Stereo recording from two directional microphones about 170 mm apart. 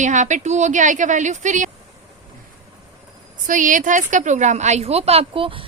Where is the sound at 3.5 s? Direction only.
50° right (ahead or behind); by 5.6 s 30° right (ahead or behind).